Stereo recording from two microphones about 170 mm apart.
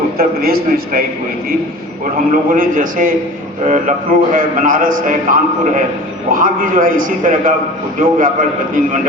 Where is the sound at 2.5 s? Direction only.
55° right (ahead or behind).